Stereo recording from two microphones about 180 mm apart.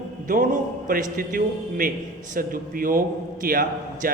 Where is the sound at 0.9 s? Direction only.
50° right (ahead or behind).